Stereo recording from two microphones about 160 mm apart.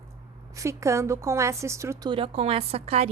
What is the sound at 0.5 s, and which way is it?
A woman's voice, 20° right (ahead or behind).